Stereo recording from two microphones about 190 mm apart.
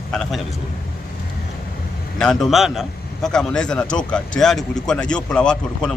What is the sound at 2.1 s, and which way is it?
Speech, centre (ahead or behind).